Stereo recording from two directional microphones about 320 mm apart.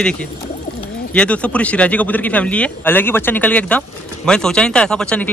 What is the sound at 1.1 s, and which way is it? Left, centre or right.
Speech, centre.